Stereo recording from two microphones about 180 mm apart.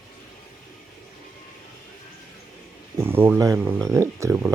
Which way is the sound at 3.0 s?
10° right (ahead or behind).